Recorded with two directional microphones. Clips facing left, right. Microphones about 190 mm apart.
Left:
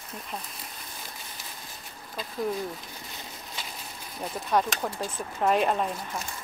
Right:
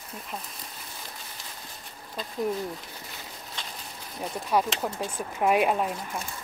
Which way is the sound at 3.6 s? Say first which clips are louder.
Even; 5° left (ahead or behind).